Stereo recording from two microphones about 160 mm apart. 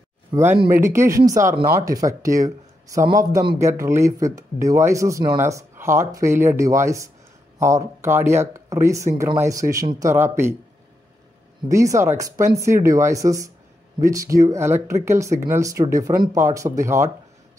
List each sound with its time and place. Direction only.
0.3 s speech: 15° right (ahead or behind)
11.7 s speech: 20° right (ahead or behind)